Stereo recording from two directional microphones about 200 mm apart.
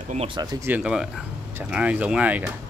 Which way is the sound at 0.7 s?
5° right (ahead or behind).